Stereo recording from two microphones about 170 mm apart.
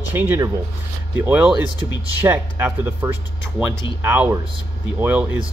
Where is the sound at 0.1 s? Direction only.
15° right (ahead or behind).